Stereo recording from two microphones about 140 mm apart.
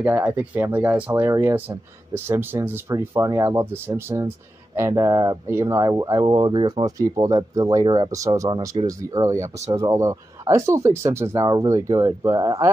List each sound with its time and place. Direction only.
0.0 s speech: 15° right (ahead or behind)
8.5 s speech: 35° right (ahead or behind)
8.8 s speech: 25° right (ahead or behind)